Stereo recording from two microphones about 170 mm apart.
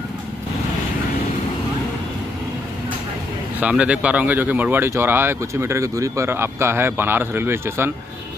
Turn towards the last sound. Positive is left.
turn(degrees=-15)  # may be behind; listen again after turning